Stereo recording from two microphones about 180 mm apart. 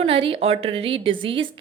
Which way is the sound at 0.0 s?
30° right (ahead or behind).